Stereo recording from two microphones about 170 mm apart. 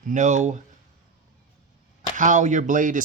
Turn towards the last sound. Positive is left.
turn(degrees=-50)  # may be behind; listen again after turning